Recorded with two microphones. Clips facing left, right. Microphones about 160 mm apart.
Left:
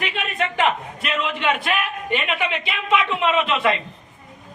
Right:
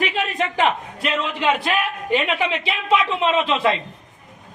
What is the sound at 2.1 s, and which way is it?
Speech, 35° right (ahead or behind).